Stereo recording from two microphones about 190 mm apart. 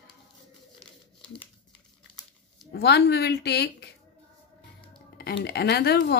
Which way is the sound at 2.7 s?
60° left (ahead or behind).